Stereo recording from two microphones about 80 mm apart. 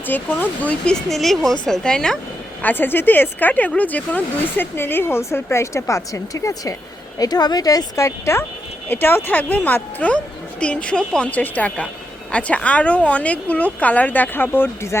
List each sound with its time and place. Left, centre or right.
0.1 s speech: left; by 2.1 s centre
2.6 s speech: left
7.2 s speech: left
8.9 s speech: left